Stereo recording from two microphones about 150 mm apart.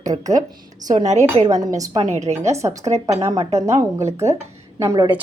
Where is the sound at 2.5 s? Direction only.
20° right (ahead or behind).